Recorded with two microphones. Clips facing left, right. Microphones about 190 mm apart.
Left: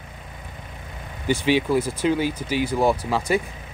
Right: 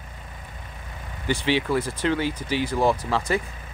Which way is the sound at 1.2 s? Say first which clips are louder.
Left 3 dB; 10° left (ahead or behind).